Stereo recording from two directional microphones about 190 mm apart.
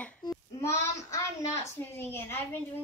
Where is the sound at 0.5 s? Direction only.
15° left (ahead or behind).